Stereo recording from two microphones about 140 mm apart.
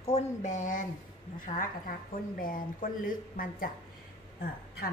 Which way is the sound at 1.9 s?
90° left.